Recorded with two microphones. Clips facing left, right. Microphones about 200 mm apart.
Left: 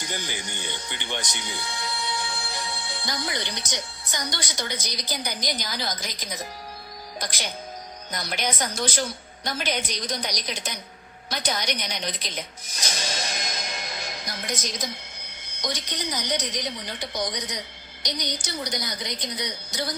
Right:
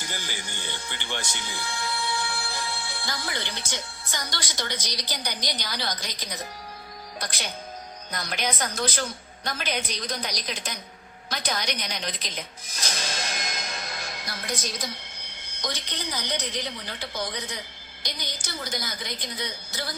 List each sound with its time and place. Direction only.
0.0 s a woman's voice: 15° left (ahead or behind)
13.6 s music: 15° left (ahead or behind)
14.6 s a woman's voice: 15° left (ahead or behind)